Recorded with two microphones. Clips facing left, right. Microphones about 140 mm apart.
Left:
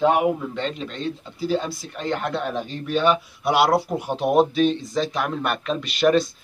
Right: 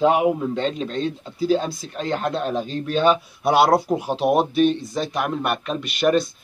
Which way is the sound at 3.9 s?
15° right (ahead or behind).